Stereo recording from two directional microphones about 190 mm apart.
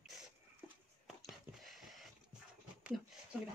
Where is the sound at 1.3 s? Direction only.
Centre (ahead or behind).